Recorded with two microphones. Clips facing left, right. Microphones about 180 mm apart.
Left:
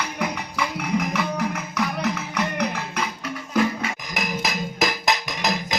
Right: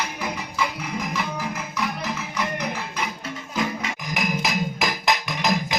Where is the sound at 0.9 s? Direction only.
65° left (ahead or behind).